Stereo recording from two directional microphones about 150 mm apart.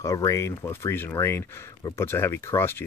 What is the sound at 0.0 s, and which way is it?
Speech, 20° left (ahead or behind).